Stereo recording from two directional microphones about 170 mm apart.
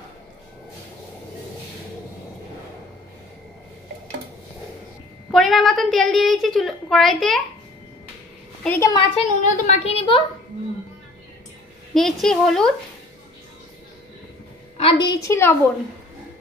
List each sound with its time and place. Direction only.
5.3 s a woman's voice: centre (ahead or behind)
8.6 s a woman's voice: 15° left (ahead or behind)
9.1 s a woman's voice: 40° left (ahead or behind)
11.9 s a woman's voice: centre (ahead or behind)
14.8 s a woman's voice: 30° left (ahead or behind)
15.2 s a woman's voice: 15° left (ahead or behind)